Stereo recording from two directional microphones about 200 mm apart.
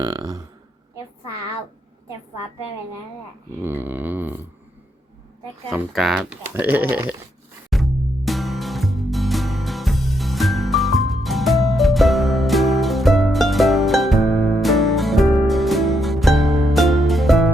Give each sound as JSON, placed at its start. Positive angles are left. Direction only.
{"t": 0.0, "sound": "speech", "side_deg": -20}
{"t": 3.6, "sound": "speech", "side_deg": -10}
{"t": 5.7, "sound": "speech", "side_deg": 0}
{"t": 7.7, "sound": "music", "side_deg": 0}